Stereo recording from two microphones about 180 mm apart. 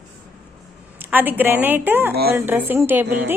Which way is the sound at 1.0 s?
10° right (ahead or behind).